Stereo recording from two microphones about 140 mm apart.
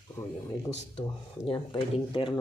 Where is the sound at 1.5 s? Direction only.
35° left (ahead or behind).